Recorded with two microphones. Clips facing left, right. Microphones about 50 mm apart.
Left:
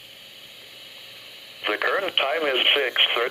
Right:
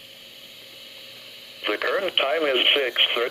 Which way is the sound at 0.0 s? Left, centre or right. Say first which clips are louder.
Even; centre.